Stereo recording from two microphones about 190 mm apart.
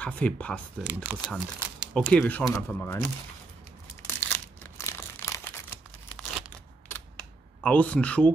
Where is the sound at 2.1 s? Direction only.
10° left (ahead or behind).